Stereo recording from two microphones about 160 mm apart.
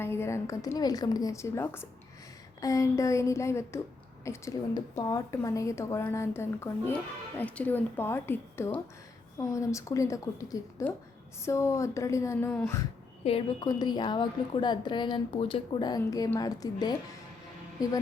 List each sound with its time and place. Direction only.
0.0 s a child's voice: 15° left (ahead or behind)
13.2 s a woman's voice: 35° left (ahead or behind)
13.7 s a woman's voice: 25° left (ahead or behind)